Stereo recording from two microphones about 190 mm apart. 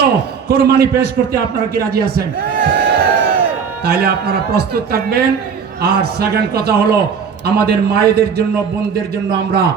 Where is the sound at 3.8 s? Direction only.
55° right (ahead or behind).